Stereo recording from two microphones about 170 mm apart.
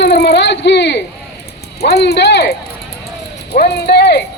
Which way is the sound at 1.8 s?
75° left (ahead or behind).